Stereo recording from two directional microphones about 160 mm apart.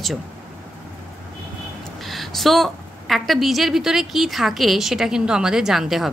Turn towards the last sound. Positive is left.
turn(degrees=0)  # may be behind; listen again after turning